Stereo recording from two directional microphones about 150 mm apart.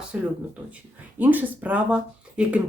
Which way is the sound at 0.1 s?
5° right (ahead or behind).